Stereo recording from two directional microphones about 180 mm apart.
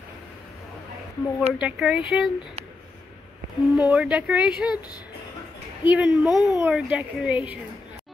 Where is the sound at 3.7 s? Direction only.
5° right (ahead or behind).